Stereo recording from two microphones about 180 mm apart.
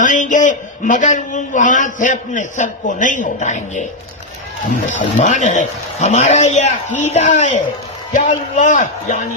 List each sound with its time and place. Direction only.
0.0 s a man's voice: 45° left (ahead or behind)
4.9 s a man's voice: 40° left (ahead or behind)